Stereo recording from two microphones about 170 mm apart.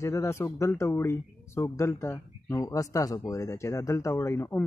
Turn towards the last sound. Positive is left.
turn(degrees=15)  # may be behind; listen again after turning